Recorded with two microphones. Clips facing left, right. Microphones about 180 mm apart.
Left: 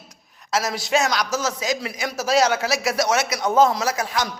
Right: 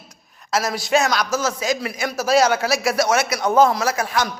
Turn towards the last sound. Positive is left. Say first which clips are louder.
# right 2 dB
turn(degrees=20)  # may be behind; listen again after turning